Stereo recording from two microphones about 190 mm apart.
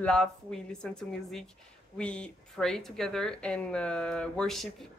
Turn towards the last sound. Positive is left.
turn(degrees=5)  # may be behind; listen again after turning